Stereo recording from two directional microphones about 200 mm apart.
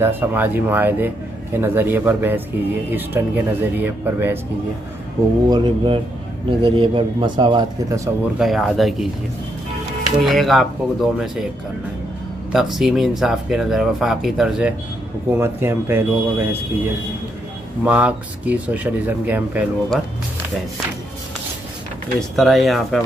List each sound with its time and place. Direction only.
0.0 s speech: 10° right (ahead or behind)
5.5 s speech: 25° right (ahead or behind)
8.4 s speech: centre (ahead or behind)
10.2 s speech: centre (ahead or behind)
12.7 s speech: centre (ahead or behind)
15.3 s speech: 10° right (ahead or behind)
22.3 s speech: centre (ahead or behind)